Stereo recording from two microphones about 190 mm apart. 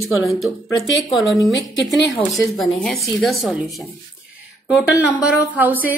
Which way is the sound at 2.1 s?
20° left (ahead or behind).